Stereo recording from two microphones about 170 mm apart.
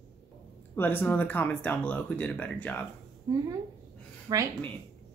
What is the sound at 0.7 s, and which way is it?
Speech, 10° left (ahead or behind).